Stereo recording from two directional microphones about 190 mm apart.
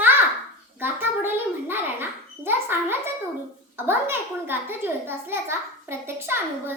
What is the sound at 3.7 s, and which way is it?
A child's voice, 10° right (ahead or behind).